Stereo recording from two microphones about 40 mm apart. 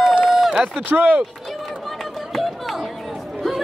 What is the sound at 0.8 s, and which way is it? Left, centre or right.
Speech, right.